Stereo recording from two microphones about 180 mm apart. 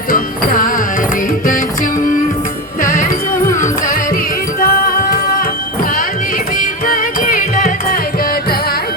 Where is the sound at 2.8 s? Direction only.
50° left (ahead or behind).